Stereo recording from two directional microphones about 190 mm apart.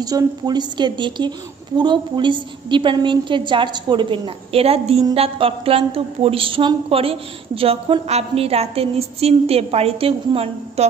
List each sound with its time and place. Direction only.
0.0 s a woman's voice: 20° right (ahead or behind)